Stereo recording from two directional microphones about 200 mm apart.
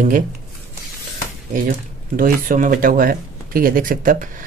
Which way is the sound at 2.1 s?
45° right (ahead or behind).